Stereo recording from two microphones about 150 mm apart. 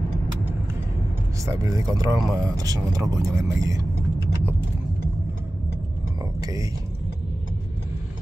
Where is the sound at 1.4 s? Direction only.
20° right (ahead or behind).